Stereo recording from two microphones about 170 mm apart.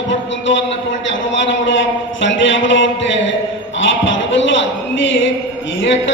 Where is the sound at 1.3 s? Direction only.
90° left.